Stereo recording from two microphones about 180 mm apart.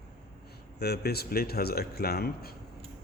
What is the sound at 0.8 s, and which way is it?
Speech, 60° left (ahead or behind).